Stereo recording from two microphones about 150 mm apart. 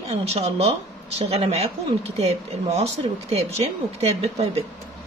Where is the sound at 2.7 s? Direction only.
45° right (ahead or behind).